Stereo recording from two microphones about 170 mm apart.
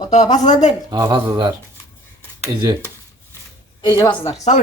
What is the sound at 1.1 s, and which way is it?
Speech, 25° right (ahead or behind).